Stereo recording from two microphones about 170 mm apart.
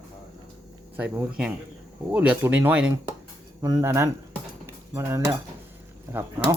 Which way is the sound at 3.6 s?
20° right (ahead or behind).